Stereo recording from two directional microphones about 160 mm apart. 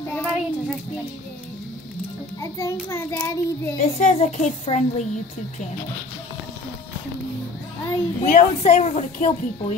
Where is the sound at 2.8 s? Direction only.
15° left (ahead or behind).